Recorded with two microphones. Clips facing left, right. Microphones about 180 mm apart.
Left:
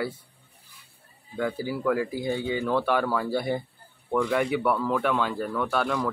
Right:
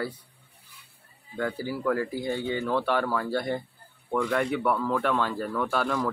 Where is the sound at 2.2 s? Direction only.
15° left (ahead or behind).